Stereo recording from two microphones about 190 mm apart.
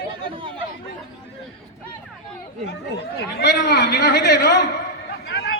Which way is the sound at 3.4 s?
60° left (ahead or behind).